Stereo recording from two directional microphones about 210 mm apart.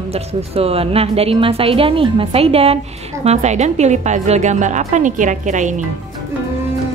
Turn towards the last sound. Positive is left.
turn(degrees=-35)  # may be behind; listen again after turning